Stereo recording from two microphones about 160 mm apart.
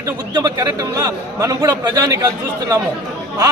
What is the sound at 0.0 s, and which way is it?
A man's voice, 25° right (ahead or behind).